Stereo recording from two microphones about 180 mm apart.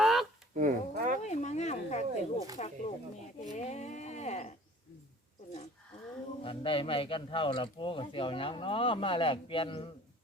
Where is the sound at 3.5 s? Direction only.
40° left (ahead or behind).